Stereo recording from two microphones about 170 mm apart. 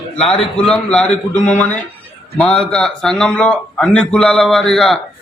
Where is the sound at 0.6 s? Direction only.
5° left (ahead or behind).